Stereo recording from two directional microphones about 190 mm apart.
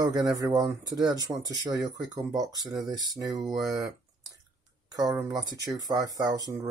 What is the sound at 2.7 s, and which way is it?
Speech, 20° right (ahead or behind).